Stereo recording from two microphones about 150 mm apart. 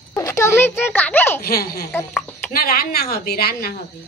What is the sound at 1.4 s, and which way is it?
A woman's voice, 90° left.